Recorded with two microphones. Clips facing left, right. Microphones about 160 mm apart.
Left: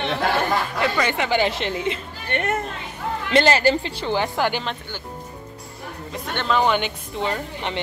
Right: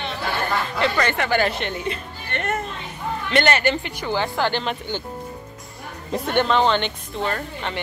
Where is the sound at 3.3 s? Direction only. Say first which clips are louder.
Left 3 dB; 30° left (ahead or behind).